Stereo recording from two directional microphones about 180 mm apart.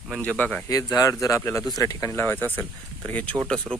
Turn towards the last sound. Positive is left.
turn(degrees=5)  # may be behind; listen again after turning